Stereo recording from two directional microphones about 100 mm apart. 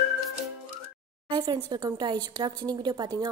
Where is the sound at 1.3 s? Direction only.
45° right (ahead or behind).